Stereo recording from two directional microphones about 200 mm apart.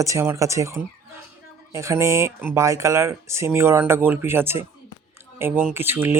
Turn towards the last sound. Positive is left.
turn(degrees=-10)  # may be behind; listen again after turning